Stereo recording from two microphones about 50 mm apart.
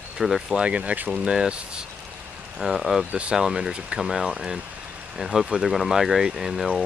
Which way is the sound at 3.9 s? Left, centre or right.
Centre.